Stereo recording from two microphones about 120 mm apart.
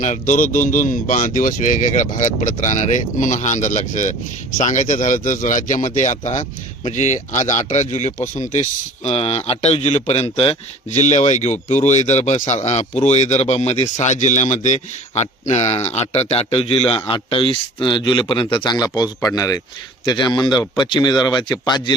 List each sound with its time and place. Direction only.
0.0 s a man's voice: 90° left; by 8.1 s 70° left (ahead or behind)
8.3 s speech: 90° left
9.0 s a man's voice: 60° left (ahead or behind)
13.9 s a man's voice: 80° left; by 21.9 s 35° left (ahead or behind)